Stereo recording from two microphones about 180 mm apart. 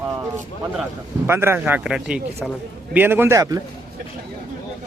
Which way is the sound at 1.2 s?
15° right (ahead or behind).